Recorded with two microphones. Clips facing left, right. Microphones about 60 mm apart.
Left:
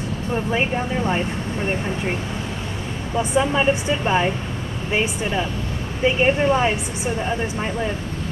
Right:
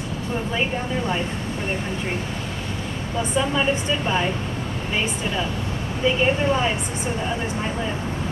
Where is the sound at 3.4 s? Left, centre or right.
Left.